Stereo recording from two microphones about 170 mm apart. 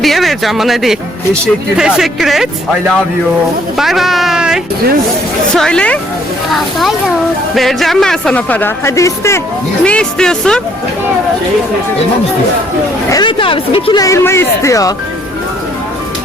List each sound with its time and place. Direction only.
0.0 s speech: centre (ahead or behind)
3.8 s speech: centre (ahead or behind); by 9.4 s 15° left (ahead or behind)
9.8 s speech: 5° left (ahead or behind)
13.1 s speech: 25° left (ahead or behind)
14.0 s speech: 15° left (ahead or behind)